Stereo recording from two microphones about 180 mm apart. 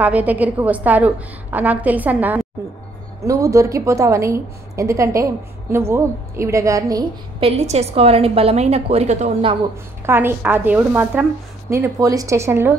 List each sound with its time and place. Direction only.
0.0 s a woman's voice: 10° right (ahead or behind)
7.4 s a woman's voice: 35° right (ahead or behind)
10.0 s a woman's voice: 10° right (ahead or behind)